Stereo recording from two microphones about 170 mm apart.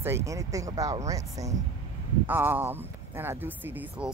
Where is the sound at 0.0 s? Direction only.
15° right (ahead or behind).